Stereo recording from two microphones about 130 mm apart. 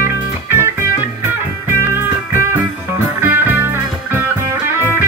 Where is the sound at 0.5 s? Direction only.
20° right (ahead or behind).